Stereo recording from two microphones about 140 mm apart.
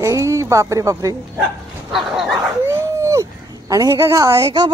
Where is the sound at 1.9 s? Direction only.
5° right (ahead or behind).